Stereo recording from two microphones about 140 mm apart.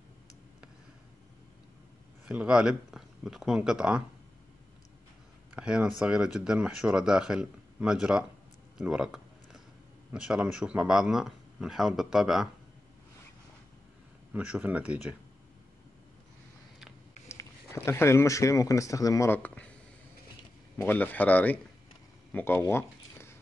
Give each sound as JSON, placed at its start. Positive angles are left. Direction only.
{"t": 2.2, "sound": "speech", "side_deg": -10}
{"t": 5.5, "sound": "speech", "side_deg": -5}
{"t": 8.7, "sound": "a sound", "side_deg": -5}
{"t": 10.1, "sound": "speech", "side_deg": -5}
{"t": 14.3, "sound": "speech", "side_deg": -10}
{"t": 17.3, "sound": "speech", "side_deg": 20}
{"t": 20.7, "sound": "speech", "side_deg": 10}
{"t": 22.3, "sound": "a sound", "side_deg": 15}